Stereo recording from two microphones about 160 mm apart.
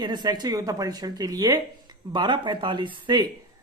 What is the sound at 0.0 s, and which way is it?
Speech, 25° right (ahead or behind).